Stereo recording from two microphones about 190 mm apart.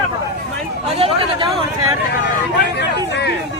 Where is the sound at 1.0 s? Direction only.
30° right (ahead or behind).